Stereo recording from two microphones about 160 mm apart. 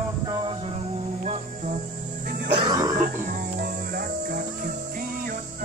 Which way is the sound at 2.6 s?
25° right (ahead or behind).